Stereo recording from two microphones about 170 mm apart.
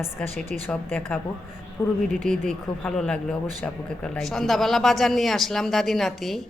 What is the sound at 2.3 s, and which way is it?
Speech, centre (ahead or behind).